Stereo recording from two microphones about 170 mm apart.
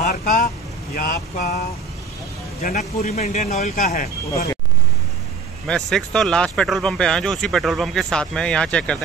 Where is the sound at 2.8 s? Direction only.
40° left (ahead or behind).